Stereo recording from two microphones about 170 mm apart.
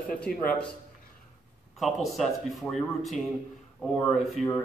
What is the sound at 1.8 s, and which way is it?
A man's voice, centre (ahead or behind).